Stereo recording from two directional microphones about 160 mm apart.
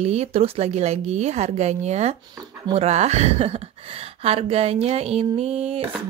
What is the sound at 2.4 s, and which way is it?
Speech, 30° right (ahead or behind).